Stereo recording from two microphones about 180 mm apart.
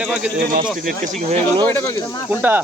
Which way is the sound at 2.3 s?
10° right (ahead or behind).